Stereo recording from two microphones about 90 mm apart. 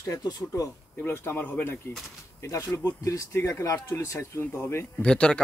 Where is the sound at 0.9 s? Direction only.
25° left (ahead or behind).